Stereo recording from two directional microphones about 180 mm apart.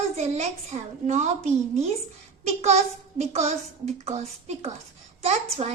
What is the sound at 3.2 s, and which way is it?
A child's voice, 35° right (ahead or behind).